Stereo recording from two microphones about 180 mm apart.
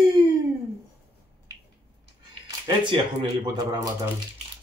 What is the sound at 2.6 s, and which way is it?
Speech, 30° right (ahead or behind).